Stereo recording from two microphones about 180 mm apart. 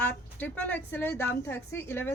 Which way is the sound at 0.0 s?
10° left (ahead or behind).